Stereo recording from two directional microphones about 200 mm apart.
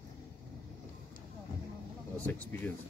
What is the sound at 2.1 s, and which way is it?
Speech, 5° left (ahead or behind).